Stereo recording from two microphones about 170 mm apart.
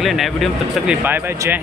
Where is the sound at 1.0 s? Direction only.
10° right (ahead or behind).